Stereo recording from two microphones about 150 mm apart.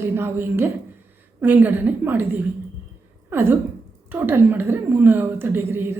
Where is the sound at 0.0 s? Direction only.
15° right (ahead or behind).